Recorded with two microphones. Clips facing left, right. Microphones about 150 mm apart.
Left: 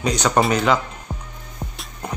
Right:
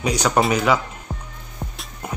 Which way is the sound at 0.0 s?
10° right (ahead or behind).